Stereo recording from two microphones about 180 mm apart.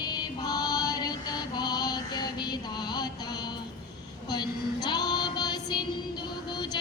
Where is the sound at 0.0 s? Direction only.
25° left (ahead or behind).